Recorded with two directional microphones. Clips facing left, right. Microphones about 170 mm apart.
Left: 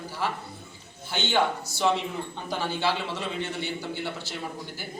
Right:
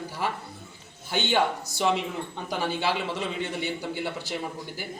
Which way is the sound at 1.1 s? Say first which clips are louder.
Right 1 dB; 15° right (ahead or behind).